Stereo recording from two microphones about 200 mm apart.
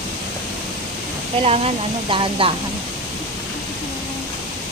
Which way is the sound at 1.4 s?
30° right (ahead or behind).